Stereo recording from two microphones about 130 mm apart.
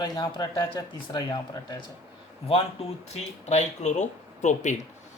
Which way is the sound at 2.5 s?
55° left (ahead or behind).